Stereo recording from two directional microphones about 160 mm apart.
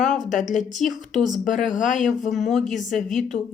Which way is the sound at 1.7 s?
55° left (ahead or behind).